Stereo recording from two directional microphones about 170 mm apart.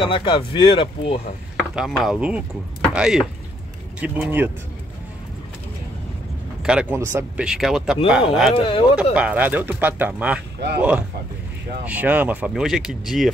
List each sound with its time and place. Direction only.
0.0 s speech: 30° left (ahead or behind)
1.8 s speech: centre (ahead or behind)
6.6 s speech: 5° right (ahead or behind)
8.5 s speech: 35° left (ahead or behind)
9.1 s speech: 10° right (ahead or behind)